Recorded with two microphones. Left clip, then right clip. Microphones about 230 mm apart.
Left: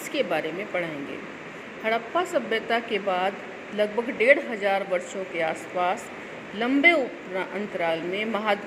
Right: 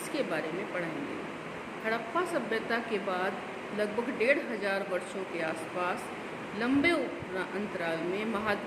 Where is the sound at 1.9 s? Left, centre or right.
Centre.